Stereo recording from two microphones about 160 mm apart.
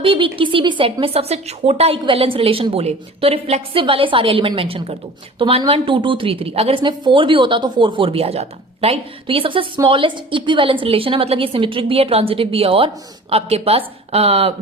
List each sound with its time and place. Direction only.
0.0 s a woman's voice: 35° right (ahead or behind)